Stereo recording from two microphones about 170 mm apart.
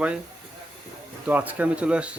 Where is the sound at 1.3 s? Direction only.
10° right (ahead or behind).